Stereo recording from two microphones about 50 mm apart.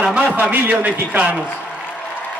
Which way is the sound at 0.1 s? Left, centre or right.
Right.